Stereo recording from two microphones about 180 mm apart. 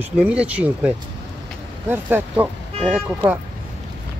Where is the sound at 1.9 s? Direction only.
10° right (ahead or behind).